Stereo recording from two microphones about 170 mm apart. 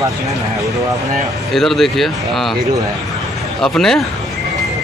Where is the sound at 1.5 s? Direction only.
Centre (ahead or behind).